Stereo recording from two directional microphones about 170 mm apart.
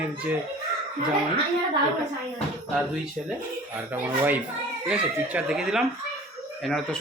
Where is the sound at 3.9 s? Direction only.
10° right (ahead or behind).